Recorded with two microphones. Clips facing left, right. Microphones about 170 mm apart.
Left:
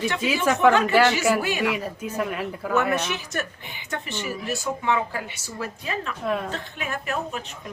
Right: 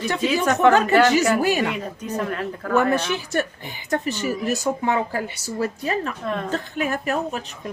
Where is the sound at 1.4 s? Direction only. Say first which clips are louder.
Right 6 dB; 40° right (ahead or behind).